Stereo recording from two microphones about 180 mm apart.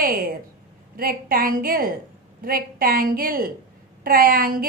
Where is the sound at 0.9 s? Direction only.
55° right (ahead or behind).